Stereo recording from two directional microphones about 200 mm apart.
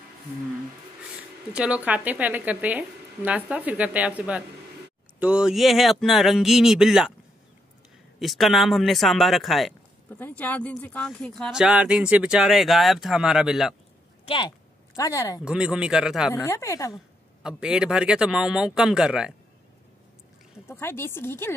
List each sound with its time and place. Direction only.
1.5 s a woman's voice: 5° right (ahead or behind)
8.2 s speech: centre (ahead or behind)
14.2 s speech: 25° left (ahead or behind)
15.4 s speech: 5° right (ahead or behind)
16.4 s speech: 15° left (ahead or behind)
16.9 s speech: 5° right (ahead or behind)
20.6 s speech: 10° left (ahead or behind)